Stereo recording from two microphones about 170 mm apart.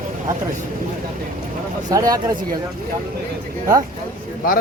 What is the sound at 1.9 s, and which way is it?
Speech, 20° right (ahead or behind).